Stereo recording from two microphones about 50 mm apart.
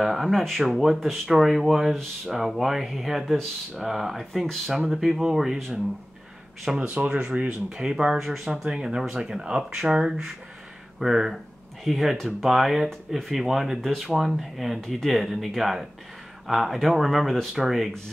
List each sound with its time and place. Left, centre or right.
0.0 s speech: centre
6.9 s speech: right
7.7 s speech: centre
14.8 s speech: centre
15.0 s speech: centre